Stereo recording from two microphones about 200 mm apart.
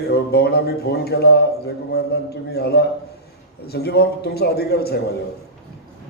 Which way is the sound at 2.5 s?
55° left (ahead or behind).